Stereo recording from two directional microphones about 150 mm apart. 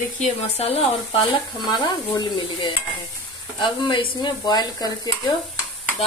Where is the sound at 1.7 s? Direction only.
30° left (ahead or behind).